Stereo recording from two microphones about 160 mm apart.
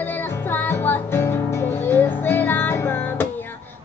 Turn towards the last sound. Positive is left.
turn(degrees=10)  # may be behind; listen again after turning